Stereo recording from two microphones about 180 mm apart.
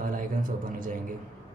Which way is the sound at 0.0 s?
50° right (ahead or behind).